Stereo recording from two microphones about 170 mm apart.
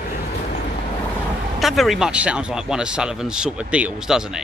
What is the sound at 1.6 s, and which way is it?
Speech, centre (ahead or behind).